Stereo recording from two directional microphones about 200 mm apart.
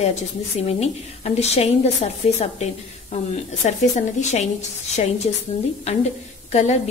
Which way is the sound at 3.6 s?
35° left (ahead or behind).